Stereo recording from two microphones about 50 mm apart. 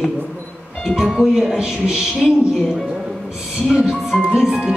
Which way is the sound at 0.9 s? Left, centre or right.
Centre.